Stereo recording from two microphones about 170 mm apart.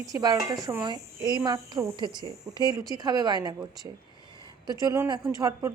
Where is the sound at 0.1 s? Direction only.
20° right (ahead or behind).